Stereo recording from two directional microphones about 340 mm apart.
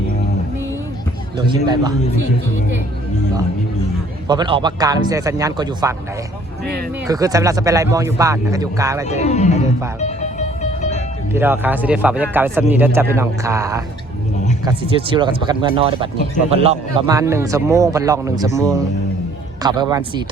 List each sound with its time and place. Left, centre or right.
1.6 s speech: centre
4.3 s speech: centre
7.1 s speech: centre
9.0 s speech: centre
10.0 s music: centre
11.3 s speech: centre
19.6 s speech: centre